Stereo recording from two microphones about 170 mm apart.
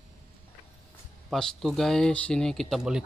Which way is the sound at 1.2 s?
Centre (ahead or behind).